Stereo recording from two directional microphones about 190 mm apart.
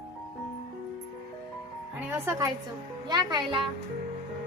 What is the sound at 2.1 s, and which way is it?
Speech, 10° right (ahead or behind).